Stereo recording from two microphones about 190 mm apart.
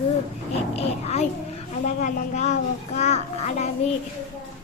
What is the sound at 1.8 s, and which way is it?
A child's voice, 40° left (ahead or behind).